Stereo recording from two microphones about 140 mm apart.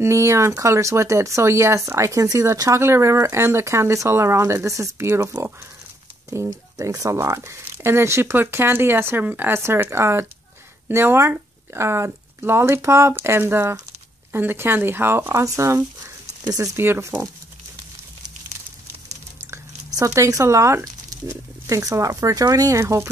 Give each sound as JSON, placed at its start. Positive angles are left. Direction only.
{"t": 0.0, "sound": "speech", "side_deg": -20}
{"t": 20.0, "sound": "speech", "side_deg": -25}